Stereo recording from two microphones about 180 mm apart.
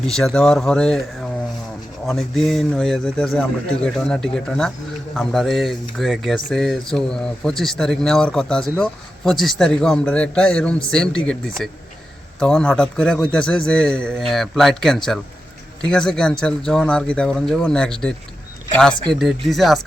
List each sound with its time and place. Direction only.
0.0 s speech: 5° left (ahead or behind)
2.0 s speech: centre (ahead or behind)
19.5 s speech: centre (ahead or behind)